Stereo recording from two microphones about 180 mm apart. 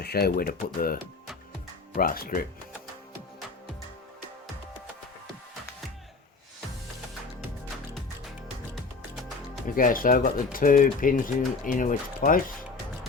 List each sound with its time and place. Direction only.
0.0 s speech: 60° left (ahead or behind)
2.0 s speech: 55° left (ahead or behind)
9.7 s speech: 50° left (ahead or behind)